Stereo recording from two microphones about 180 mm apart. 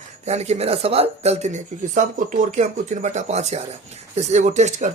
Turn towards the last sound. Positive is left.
turn(degrees=-40)  # may be behind; listen again after turning